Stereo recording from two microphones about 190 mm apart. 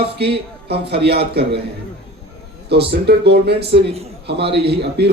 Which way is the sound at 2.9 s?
60° right (ahead or behind).